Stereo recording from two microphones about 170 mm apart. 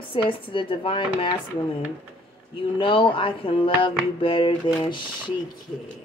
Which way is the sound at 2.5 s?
30° left (ahead or behind).